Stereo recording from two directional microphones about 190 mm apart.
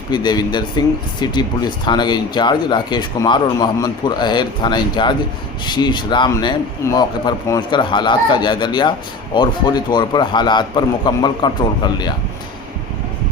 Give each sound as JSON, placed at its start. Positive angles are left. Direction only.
{"t": 0.1, "sound": "speech", "side_deg": 25}